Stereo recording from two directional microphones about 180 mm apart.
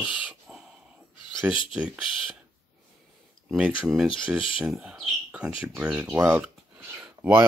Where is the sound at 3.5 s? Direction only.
Centre (ahead or behind).